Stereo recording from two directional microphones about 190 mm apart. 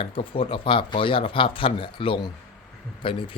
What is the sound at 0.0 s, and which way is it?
A man's voice, 30° left (ahead or behind).